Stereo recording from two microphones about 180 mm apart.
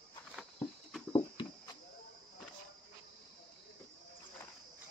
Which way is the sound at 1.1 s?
25° left (ahead or behind).